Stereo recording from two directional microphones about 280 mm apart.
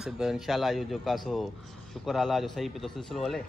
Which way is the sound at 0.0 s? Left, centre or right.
Centre.